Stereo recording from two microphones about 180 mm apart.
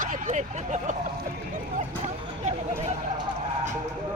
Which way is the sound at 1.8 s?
40° right (ahead or behind).